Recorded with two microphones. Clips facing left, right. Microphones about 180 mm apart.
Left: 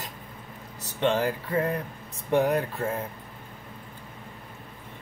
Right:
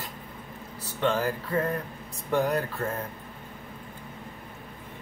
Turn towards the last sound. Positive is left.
turn(degrees=15)  # may be behind; listen again after turning